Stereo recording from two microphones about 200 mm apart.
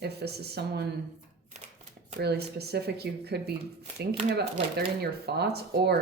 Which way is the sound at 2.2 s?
55° right (ahead or behind).